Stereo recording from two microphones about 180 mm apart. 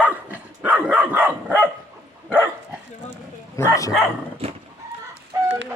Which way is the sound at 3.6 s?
15° left (ahead or behind).